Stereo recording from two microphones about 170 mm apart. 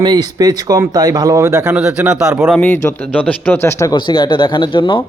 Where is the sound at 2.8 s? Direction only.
10° left (ahead or behind); by 5.0 s 30° left (ahead or behind).